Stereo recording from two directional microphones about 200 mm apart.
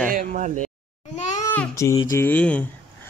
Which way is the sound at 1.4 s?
15° left (ahead or behind).